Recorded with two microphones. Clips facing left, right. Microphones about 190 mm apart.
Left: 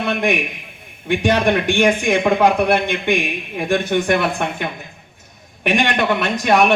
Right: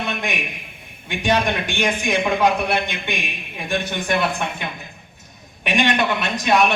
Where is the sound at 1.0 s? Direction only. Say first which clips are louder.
Left 4 dB; 60° left (ahead or behind).